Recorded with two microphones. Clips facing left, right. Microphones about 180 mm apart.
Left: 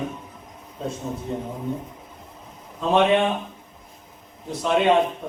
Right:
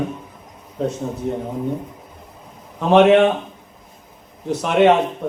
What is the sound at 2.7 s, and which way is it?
Speech, 75° right (ahead or behind).